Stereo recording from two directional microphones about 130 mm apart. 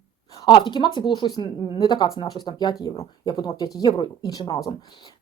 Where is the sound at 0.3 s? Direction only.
35° left (ahead or behind).